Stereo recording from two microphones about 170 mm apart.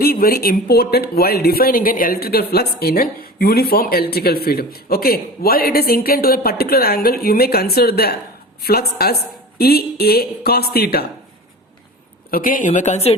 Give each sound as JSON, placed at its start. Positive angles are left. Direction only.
{"t": 0.0, "sound": "speech", "side_deg": 60}
{"t": 12.3, "sound": "speech", "side_deg": 55}